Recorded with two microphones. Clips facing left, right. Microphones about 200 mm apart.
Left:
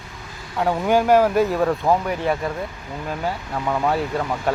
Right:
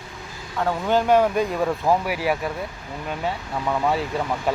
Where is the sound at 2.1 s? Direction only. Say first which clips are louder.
Left 1 dB; 5° right (ahead or behind).